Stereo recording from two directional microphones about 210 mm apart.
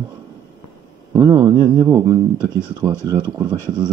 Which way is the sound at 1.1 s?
20° right (ahead or behind).